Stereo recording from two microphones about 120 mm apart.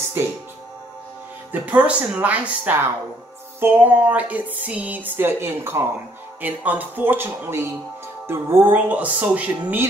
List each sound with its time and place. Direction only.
0.2 s speech: 20° right (ahead or behind)
1.5 s music: 15° right (ahead or behind)